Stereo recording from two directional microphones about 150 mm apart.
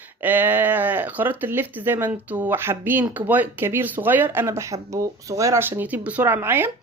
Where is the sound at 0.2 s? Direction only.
15° right (ahead or behind).